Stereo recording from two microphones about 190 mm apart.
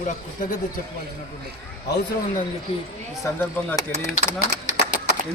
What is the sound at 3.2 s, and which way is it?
Speech, 15° left (ahead or behind).